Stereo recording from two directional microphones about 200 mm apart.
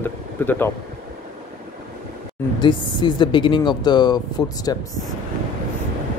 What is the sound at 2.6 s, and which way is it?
Speech, 20° left (ahead or behind).